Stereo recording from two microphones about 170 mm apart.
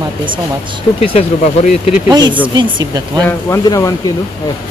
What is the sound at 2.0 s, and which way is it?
Speech, 25° right (ahead or behind).